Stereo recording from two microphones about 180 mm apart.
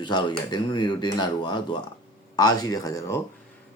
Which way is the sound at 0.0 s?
25° left (ahead or behind).